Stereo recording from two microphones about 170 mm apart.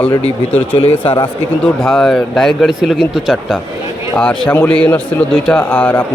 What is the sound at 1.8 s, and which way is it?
A man's voice, centre (ahead or behind).